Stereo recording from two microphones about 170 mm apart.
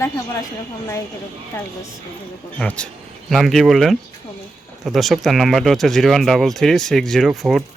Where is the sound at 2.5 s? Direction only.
5° left (ahead or behind).